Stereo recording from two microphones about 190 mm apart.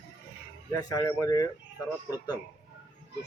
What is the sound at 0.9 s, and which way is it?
Speech, 15° left (ahead or behind).